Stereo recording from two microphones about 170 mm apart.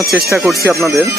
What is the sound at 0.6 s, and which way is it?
Speech, 15° right (ahead or behind).